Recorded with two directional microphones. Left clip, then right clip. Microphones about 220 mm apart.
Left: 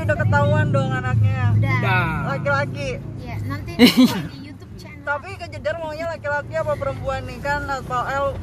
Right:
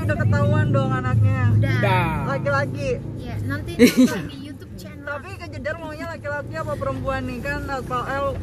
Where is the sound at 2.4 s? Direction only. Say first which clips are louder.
Left 2 dB; 40° left (ahead or behind).